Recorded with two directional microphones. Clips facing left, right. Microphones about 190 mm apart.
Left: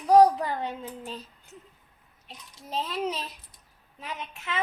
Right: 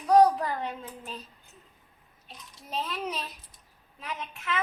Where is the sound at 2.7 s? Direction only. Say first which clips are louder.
Left 3 dB; 30° left (ahead or behind).